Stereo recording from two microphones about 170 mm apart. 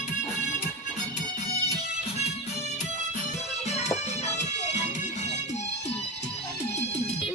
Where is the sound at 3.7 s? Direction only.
40° left (ahead or behind).